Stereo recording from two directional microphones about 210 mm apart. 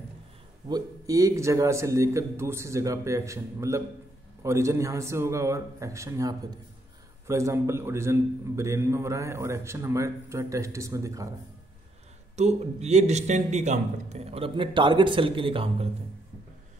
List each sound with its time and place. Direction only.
0.7 s a man's voice: 15° right (ahead or behind)
12.4 s a man's voice: 30° right (ahead or behind)